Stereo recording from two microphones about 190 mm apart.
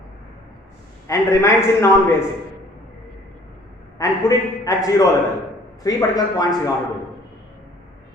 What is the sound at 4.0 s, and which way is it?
A man's voice, 20° left (ahead or behind).